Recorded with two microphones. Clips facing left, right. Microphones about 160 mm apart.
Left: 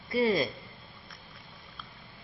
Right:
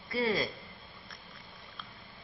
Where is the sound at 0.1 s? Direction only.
15° left (ahead or behind).